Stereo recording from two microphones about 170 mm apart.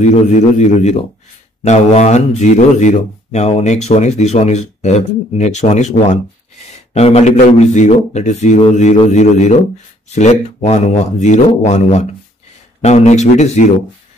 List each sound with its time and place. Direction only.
0.0 s speech: 45° left (ahead or behind)